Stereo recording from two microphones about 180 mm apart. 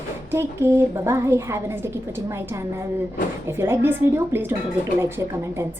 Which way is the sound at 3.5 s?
15° right (ahead or behind).